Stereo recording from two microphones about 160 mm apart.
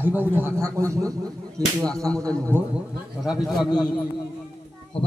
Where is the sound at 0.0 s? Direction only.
10° right (ahead or behind).